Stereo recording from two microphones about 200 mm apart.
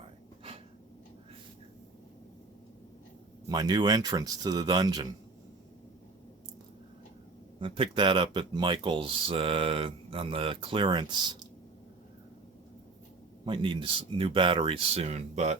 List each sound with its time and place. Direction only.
3.5 s speech: 20° right (ahead or behind)
7.6 s speech: 25° right (ahead or behind)
13.4 s speech: 25° right (ahead or behind)